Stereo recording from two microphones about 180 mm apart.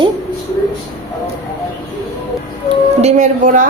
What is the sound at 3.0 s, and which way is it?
Speech, 40° right (ahead or behind).